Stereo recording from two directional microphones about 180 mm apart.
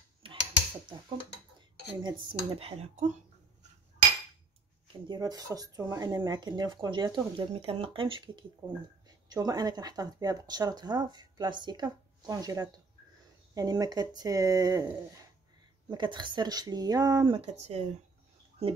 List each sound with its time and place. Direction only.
0.2 s a sound: 30° right (ahead or behind)
2.0 s speech: 30° right (ahead or behind)
5.0 s speech: 25° right (ahead or behind)
17.4 s speech: 35° right (ahead or behind)